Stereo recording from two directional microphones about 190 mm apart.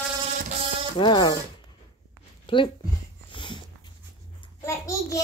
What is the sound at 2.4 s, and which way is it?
Speech, 25° left (ahead or behind).